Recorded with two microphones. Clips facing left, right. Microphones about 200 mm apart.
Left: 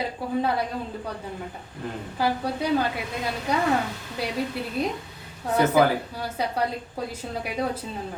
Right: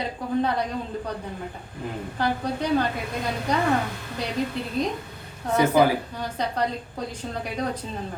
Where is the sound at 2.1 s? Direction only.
5° left (ahead or behind).